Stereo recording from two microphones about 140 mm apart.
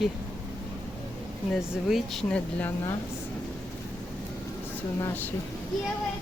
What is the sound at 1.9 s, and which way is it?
Speech, centre (ahead or behind).